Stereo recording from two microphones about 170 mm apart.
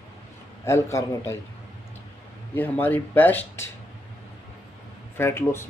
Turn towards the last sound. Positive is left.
turn(degrees=15)  # may be behind; listen again after turning